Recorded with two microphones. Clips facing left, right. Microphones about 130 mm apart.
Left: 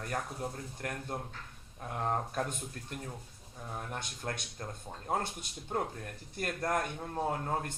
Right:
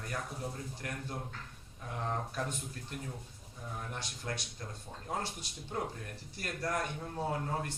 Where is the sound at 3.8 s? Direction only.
50° left (ahead or behind).